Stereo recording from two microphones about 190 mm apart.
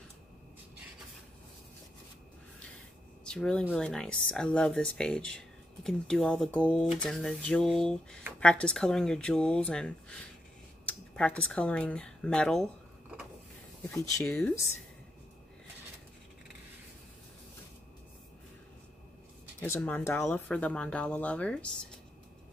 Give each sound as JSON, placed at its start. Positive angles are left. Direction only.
{"t": 3.3, "sound": "speech", "side_deg": 5}
{"t": 13.8, "sound": "speech", "side_deg": 15}
{"t": 19.6, "sound": "speech", "side_deg": 10}